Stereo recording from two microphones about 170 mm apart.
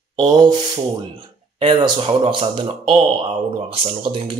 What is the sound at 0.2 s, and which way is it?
Speech, 25° right (ahead or behind).